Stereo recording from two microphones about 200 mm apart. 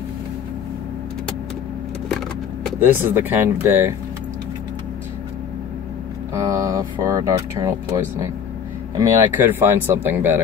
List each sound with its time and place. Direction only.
2.8 s speech: 10° right (ahead or behind)
6.3 s speech: 15° right (ahead or behind)
8.9 s speech: 10° right (ahead or behind)